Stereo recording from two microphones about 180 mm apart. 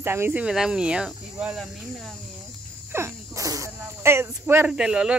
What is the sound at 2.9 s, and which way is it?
Speech, 15° right (ahead or behind).